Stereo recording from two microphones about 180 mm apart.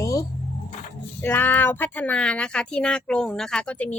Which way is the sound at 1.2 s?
10° left (ahead or behind).